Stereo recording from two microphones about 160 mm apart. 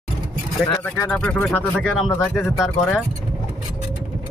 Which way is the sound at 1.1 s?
10° left (ahead or behind).